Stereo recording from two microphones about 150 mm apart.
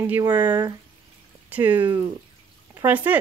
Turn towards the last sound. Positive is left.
turn(degrees=-10)  # may be behind; listen again after turning